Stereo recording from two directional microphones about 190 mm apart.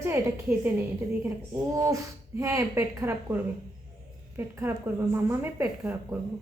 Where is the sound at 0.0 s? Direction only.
10° right (ahead or behind).